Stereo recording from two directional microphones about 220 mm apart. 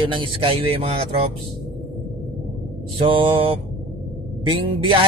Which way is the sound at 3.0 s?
25° right (ahead or behind).